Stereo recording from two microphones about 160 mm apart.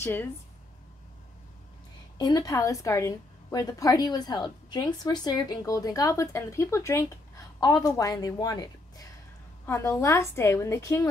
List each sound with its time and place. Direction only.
0.0 s a woman's voice: 15° left (ahead or behind)
2.1 s a woman's voice: 25° left (ahead or behind)